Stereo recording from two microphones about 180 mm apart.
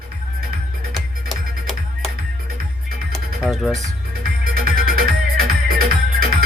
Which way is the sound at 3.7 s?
40° right (ahead or behind).